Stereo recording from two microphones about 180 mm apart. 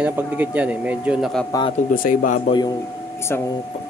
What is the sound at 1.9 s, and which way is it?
Speech, 50° left (ahead or behind).